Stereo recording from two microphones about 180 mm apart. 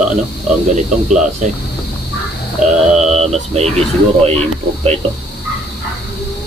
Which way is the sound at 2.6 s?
45° right (ahead or behind).